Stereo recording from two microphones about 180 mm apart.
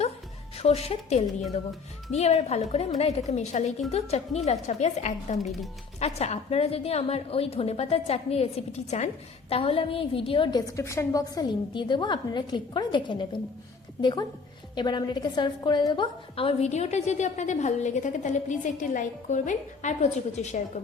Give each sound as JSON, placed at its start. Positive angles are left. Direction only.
{"t": 0.5, "sound": "a woman's voice", "side_deg": 35}